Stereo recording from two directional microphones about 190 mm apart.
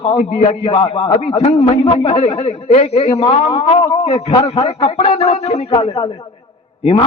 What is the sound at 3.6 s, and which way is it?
A man's voice, 35° left (ahead or behind).